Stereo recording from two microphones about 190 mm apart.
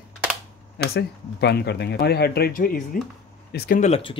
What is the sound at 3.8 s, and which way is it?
Speech, 30° left (ahead or behind).